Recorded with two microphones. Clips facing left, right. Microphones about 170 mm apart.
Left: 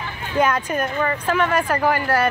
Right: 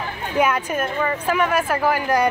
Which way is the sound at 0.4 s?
10° right (ahead or behind).